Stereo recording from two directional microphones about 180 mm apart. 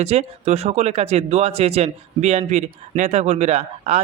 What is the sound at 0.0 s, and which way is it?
A man's voice, 35° right (ahead or behind).